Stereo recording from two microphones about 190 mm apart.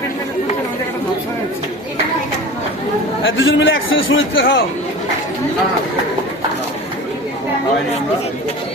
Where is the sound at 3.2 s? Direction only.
85° left.